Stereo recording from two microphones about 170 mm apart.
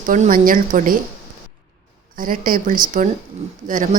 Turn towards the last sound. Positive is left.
turn(degrees=-50)  # may be behind; listen again after turning